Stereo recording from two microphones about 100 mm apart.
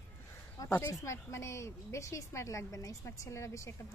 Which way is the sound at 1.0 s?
30° left (ahead or behind).